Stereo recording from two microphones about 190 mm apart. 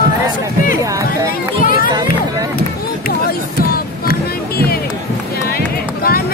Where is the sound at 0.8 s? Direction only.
15° right (ahead or behind).